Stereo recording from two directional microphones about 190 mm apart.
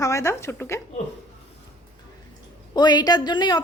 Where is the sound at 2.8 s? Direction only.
20° left (ahead or behind).